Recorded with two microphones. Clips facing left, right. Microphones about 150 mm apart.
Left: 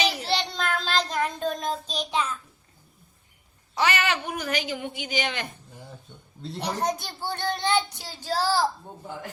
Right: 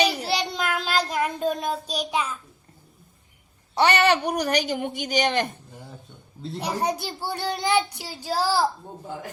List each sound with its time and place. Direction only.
0.3 s child singing: 10° right (ahead or behind)
3.8 s speech: 35° right (ahead or behind)
6.4 s a child's voice: 5° right (ahead or behind)